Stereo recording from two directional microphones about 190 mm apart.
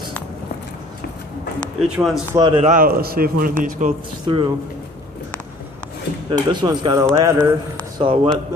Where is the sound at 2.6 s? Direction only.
50° right (ahead or behind).